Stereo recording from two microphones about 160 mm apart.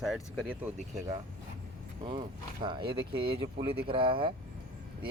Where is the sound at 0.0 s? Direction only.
5° right (ahead or behind).